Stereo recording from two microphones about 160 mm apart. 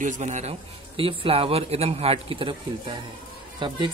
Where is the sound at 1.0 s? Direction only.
35° right (ahead or behind).